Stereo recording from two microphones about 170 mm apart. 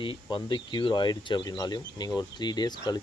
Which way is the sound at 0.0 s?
30° left (ahead or behind).